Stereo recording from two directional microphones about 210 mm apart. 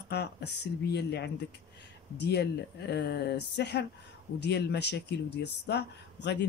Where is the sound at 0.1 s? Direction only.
50° left (ahead or behind).